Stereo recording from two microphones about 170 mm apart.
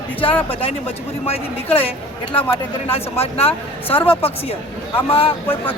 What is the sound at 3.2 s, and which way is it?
Speech, 35° left (ahead or behind).